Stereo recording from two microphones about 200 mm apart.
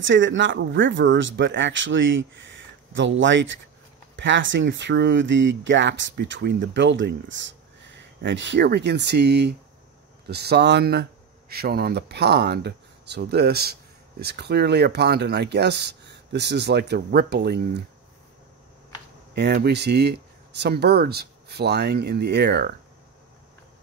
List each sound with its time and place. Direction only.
0.0 s speech: 70° right (ahead or behind)
19.3 s speech: 55° right (ahead or behind)